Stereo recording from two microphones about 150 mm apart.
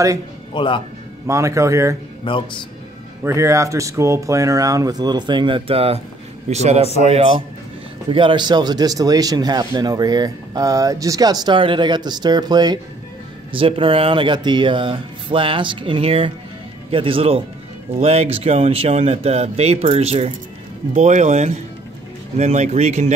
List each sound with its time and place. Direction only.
0.5 s speech: 35° left (ahead or behind)
1.2 s speech: 20° right (ahead or behind)
2.3 s speech: 35° left (ahead or behind)
3.3 s speech: 20° right (ahead or behind); by 23.1 s 45° right (ahead or behind)